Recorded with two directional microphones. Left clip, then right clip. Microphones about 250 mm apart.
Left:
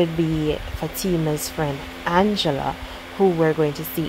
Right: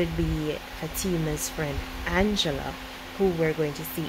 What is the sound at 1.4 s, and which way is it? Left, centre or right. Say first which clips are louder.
Speech: left 5 dB; centre.